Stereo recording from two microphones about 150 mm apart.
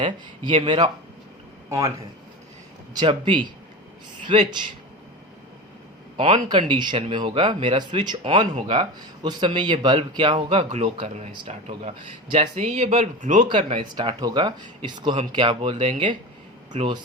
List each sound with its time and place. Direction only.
2.9 s speech: 30° right (ahead or behind)
6.1 s speech: 35° right (ahead or behind)
10.6 s speech: 45° right (ahead or behind)
11.3 s speech: 35° right (ahead or behind); by 13.4 s 55° right (ahead or behind)
13.5 s speech: 30° right (ahead or behind)